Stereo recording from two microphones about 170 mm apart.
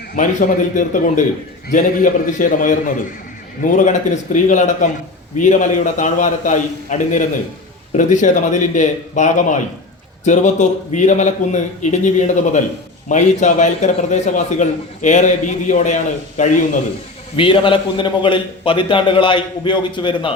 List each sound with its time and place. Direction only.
0.2 s a man's voice: 50° left (ahead or behind)
17.3 s a man's voice: 30° left (ahead or behind)